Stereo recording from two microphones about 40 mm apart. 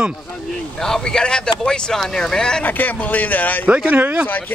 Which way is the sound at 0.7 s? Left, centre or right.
Centre.